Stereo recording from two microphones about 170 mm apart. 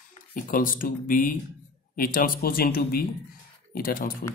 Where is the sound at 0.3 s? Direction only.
55° left (ahead or behind).